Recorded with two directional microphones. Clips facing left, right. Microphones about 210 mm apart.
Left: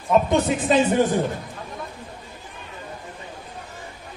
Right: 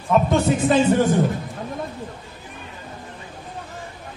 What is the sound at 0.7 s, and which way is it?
Speech, 20° left (ahead or behind).